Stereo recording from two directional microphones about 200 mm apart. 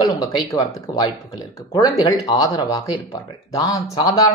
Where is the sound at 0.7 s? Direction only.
15° left (ahead or behind).